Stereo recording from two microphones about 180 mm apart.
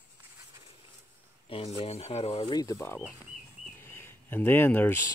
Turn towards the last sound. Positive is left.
turn(degrees=10)  # may be behind; listen again after turning